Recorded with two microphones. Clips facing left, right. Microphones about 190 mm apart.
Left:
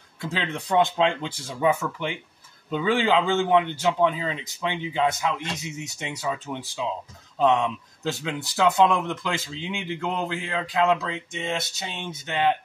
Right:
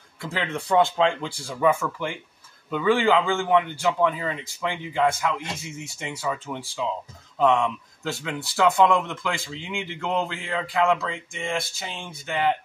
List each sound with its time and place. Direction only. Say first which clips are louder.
0.2 s speech: right 1 dB; 20° left (ahead or behind)
8.0 s speech: left 1 dB; 20° left (ahead or behind)